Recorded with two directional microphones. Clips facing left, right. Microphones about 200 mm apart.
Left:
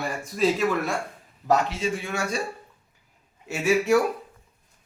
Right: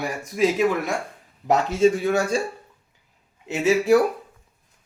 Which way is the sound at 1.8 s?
35° right (ahead or behind).